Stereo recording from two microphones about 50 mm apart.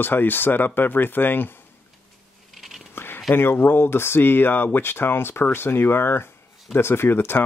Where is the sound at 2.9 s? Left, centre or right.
Left.